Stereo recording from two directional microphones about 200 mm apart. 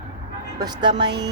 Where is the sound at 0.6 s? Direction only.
20° right (ahead or behind).